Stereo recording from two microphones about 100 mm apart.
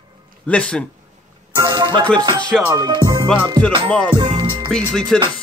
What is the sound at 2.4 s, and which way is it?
Music, 10° left (ahead or behind).